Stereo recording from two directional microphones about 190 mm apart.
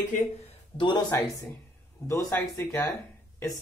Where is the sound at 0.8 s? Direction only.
20° left (ahead or behind).